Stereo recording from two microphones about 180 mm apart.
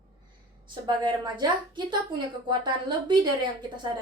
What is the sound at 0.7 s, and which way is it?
A woman's voice, 25° right (ahead or behind).